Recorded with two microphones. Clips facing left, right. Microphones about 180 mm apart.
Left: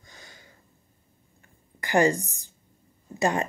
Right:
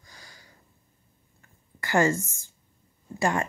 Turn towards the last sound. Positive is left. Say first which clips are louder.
# left 1 dB
turn(degrees=20)  # may be behind; listen again after turning